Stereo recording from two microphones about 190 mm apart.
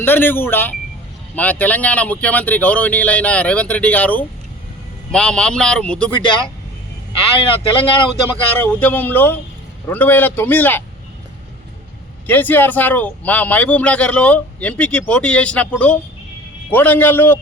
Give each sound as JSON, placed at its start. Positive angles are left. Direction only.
{"t": 0.0, "sound": "a man's voice", "side_deg": 10}
{"t": 7.3, "sound": "speech", "side_deg": 30}
{"t": 8.5, "sound": "a man's voice", "side_deg": 10}
{"t": 12.3, "sound": "a man's voice", "side_deg": 10}
{"t": 16.7, "sound": "a man's voice", "side_deg": 10}